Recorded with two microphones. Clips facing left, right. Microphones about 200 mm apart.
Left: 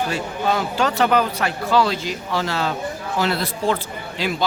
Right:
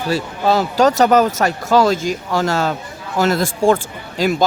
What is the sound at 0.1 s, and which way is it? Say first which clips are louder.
Speech: right 5 dB; 35° right (ahead or behind).